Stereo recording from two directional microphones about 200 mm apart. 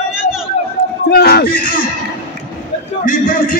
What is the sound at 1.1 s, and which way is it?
Speech, 50° left (ahead or behind).